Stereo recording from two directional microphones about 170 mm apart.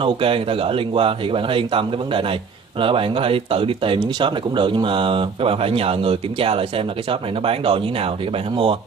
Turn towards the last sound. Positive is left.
turn(degrees=-30)  # may be behind; listen again after turning